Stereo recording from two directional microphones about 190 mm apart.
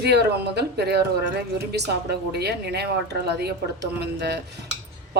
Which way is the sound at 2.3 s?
60° right (ahead or behind).